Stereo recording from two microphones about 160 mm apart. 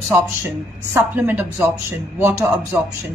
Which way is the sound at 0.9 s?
10° right (ahead or behind).